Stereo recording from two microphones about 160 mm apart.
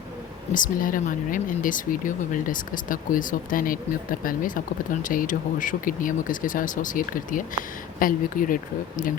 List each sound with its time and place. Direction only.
0.5 s speech: 55° left (ahead or behind)